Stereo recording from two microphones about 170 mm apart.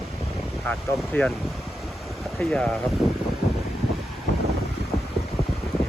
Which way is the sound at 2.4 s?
5° left (ahead or behind).